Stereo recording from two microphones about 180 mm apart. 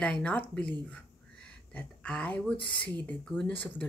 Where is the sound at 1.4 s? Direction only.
5° left (ahead or behind).